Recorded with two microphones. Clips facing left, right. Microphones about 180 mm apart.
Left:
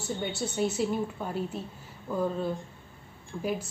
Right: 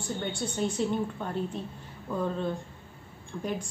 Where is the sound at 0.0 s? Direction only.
5° left (ahead or behind).